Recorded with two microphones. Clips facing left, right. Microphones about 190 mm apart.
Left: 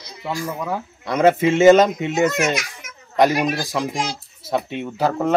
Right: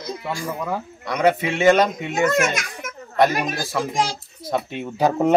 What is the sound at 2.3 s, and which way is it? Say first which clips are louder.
Children playing: even; 50° right (ahead or behind).